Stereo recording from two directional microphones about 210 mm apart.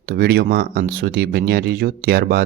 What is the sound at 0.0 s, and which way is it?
Speech, 50° right (ahead or behind).